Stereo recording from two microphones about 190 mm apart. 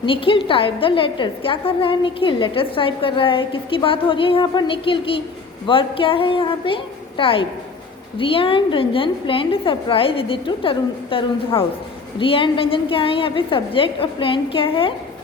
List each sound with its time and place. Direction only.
0.0 s a woman's voice: 25° left (ahead or behind)